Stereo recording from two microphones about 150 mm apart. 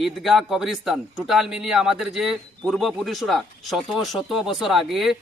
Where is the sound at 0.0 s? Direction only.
Centre (ahead or behind).